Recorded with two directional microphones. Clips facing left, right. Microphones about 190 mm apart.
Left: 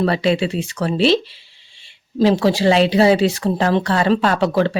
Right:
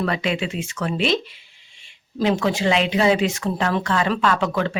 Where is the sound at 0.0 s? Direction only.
35° left (ahead or behind).